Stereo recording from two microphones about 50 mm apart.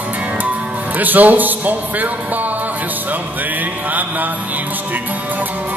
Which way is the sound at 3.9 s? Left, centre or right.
Right.